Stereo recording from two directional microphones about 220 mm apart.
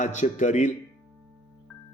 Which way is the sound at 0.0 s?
35° left (ahead or behind).